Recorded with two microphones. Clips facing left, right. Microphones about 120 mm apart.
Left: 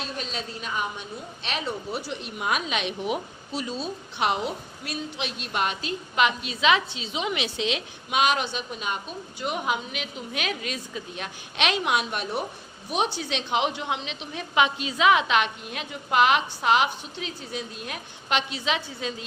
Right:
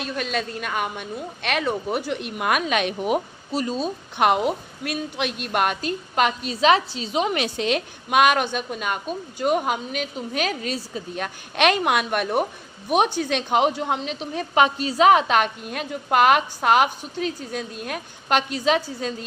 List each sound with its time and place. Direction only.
0.0 s a woman's voice: 60° right (ahead or behind); by 19.1 s 45° right (ahead or behind)